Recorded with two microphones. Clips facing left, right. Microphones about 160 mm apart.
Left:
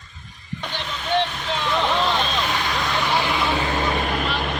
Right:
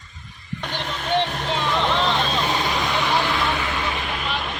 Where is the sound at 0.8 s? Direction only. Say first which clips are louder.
Even; 50° right (ahead or behind).